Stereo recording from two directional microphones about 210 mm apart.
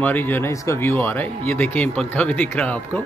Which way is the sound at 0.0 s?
10° left (ahead or behind).